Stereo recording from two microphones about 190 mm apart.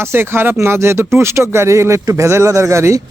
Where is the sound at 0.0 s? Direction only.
10° right (ahead or behind).